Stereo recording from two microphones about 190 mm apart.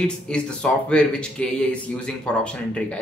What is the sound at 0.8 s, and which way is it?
Speech, 5° left (ahead or behind).